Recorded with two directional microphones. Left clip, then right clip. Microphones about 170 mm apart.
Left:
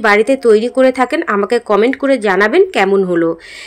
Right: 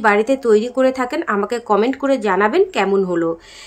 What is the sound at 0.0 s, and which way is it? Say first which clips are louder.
A woman's voice: left 4 dB; 15° left (ahead or behind).